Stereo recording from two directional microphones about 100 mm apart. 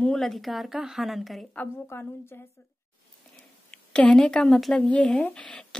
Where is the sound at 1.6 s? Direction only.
20° left (ahead or behind).